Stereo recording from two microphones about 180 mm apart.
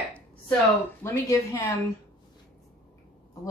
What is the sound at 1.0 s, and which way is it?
Speech, 15° left (ahead or behind).